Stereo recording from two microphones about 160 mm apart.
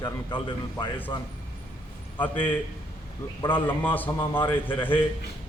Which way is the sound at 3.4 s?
10° left (ahead or behind).